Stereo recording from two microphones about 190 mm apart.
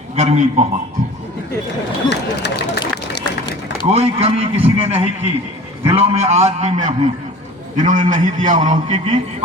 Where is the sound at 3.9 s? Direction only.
30° right (ahead or behind).